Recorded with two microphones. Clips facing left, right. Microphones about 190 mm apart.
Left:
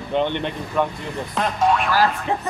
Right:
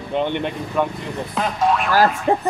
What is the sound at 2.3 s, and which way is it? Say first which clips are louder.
Music: right 6 dB; 45° right (ahead or behind).